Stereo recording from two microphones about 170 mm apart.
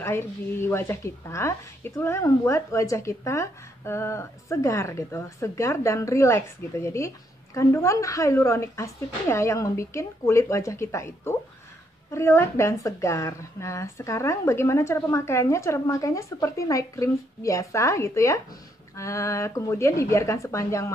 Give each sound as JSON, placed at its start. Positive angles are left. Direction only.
{"t": 0.0, "sound": "a woman's voice", "side_deg": 15}